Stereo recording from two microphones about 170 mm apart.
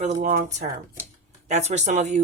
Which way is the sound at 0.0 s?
45° right (ahead or behind).